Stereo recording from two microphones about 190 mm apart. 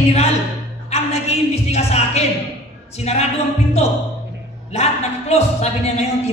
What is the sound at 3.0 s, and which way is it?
Speech, 35° left (ahead or behind).